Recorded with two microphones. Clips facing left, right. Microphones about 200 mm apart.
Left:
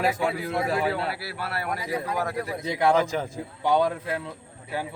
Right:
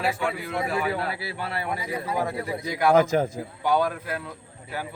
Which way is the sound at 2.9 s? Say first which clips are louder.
Right 8 dB; 45° right (ahead or behind).